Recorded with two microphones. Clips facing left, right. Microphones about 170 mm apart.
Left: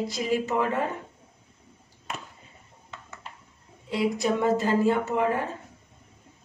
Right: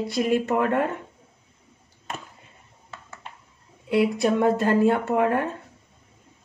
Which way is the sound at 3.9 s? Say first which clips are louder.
Right 4 dB; 60° right (ahead or behind).